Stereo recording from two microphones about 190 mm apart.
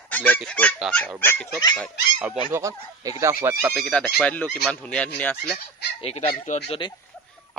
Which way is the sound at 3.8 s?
5° left (ahead or behind).